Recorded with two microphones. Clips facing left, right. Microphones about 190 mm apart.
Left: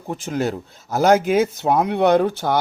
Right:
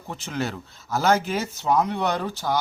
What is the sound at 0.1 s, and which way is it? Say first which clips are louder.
Speech: left 6 dB; 45° left (ahead or behind).